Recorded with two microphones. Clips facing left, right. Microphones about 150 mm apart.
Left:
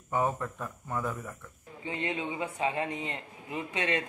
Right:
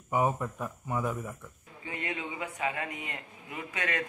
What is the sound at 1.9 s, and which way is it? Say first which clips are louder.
A man's voice: left 3 dB; 25° left (ahead or behind).